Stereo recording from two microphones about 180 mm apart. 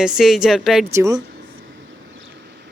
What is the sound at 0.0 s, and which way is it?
Speech, centre (ahead or behind).